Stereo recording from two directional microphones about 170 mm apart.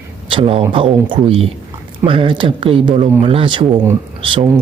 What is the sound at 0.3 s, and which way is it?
Speech, 30° right (ahead or behind).